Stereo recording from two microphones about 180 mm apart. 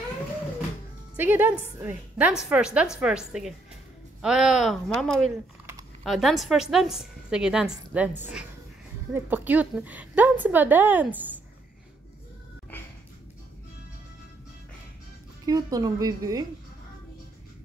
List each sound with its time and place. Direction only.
1.1 s a woman's voice: 10° right (ahead or behind)
15.4 s speech: 20° right (ahead or behind)